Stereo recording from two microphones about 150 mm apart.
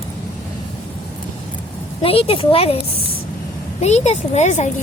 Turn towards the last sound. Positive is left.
turn(degrees=50)  # may be behind; listen again after turning